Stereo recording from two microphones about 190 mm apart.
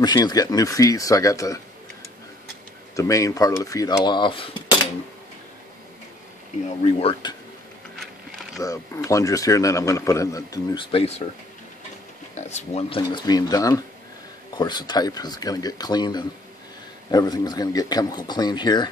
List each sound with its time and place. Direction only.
0.0 s a man's voice: 20° left (ahead or behind)
3.0 s a man's voice: 15° left (ahead or behind)
6.8 s a man's voice: 30° left (ahead or behind)
8.5 s a man's voice: 15° left (ahead or behind)
12.4 s a man's voice: 35° left (ahead or behind)